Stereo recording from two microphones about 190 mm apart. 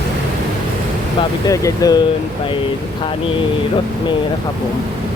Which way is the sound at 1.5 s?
20° left (ahead or behind).